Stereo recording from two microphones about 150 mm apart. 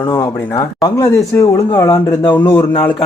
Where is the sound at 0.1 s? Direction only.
25° left (ahead or behind).